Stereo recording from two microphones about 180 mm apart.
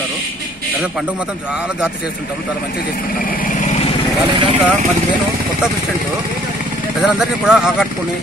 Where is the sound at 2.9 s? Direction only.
50° left (ahead or behind).